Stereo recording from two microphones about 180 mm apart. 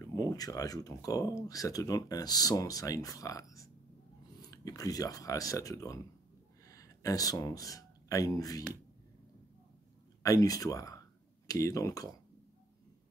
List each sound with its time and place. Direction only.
0.0 s speech: 20° left (ahead or behind)
10.2 s speech: 20° left (ahead or behind)